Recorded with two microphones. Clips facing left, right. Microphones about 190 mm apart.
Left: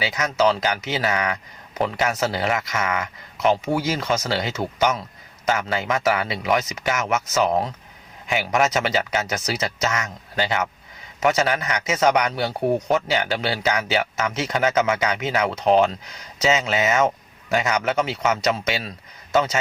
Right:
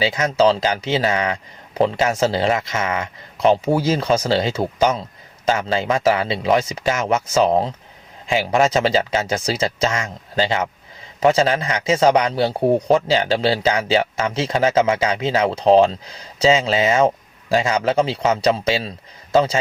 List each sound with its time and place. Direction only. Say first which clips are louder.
0.0 s a man's voice: right 4 dB; 30° right (ahead or behind)